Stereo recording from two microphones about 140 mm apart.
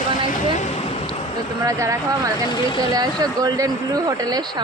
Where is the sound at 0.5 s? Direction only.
55° left (ahead or behind).